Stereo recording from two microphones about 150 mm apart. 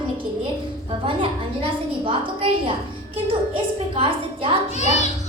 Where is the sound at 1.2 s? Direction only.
35° right (ahead or behind).